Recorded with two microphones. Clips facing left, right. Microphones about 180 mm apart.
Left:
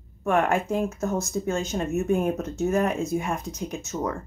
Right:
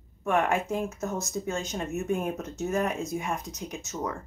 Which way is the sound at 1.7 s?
50° left (ahead or behind).